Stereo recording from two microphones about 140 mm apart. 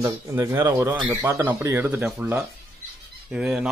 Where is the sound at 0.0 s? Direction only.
20° right (ahead or behind).